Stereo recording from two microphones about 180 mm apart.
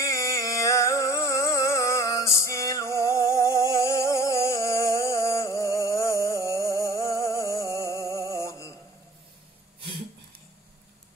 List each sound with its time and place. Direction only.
0.0 s music: 15° left (ahead or behind)